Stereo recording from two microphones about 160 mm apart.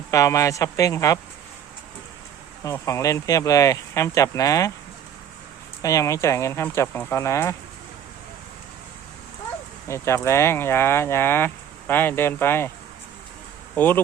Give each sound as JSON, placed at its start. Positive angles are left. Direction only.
{"t": 0.1, "sound": "speech", "side_deg": 20}
{"t": 2.6, "sound": "speech", "side_deg": 20}
{"t": 5.8, "sound": "speech", "side_deg": 20}
{"t": 9.8, "sound": "speech", "side_deg": 15}
{"t": 13.7, "sound": "speech", "side_deg": 10}